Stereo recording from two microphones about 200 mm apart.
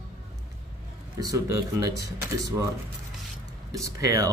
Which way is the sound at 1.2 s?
15° right (ahead or behind).